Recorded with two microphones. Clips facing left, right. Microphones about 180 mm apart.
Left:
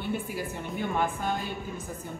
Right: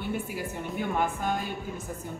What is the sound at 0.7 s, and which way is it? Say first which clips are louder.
Speech: even; 10° right (ahead or behind).